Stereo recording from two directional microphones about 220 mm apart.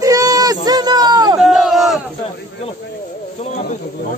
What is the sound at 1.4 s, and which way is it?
Crowd, centre (ahead or behind).